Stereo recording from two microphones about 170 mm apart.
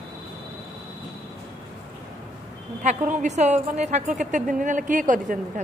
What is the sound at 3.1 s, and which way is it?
A woman's voice, 45° right (ahead or behind).